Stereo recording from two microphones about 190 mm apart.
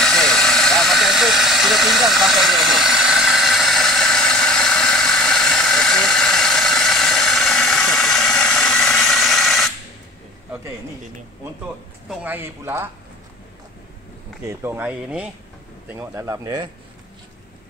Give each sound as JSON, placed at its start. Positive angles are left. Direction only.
{"t": 0.0, "sound": "vehicle", "side_deg": 5}
{"t": 12.1, "sound": "speech", "side_deg": -10}
{"t": 14.5, "sound": "speech", "side_deg": -15}